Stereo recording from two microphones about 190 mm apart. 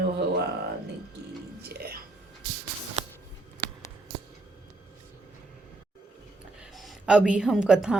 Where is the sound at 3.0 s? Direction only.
35° right (ahead or behind).